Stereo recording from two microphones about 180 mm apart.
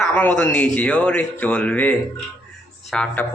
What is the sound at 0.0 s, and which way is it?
A man's voice, 10° left (ahead or behind).